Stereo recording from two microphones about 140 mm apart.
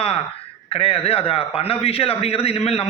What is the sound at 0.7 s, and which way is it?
A man's voice, 45° left (ahead or behind).